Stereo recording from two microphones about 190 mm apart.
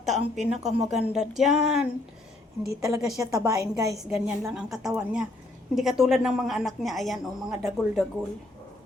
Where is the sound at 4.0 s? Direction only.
5° right (ahead or behind).